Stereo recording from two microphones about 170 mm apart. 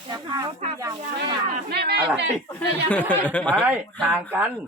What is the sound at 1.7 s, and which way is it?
Speech, 70° right (ahead or behind).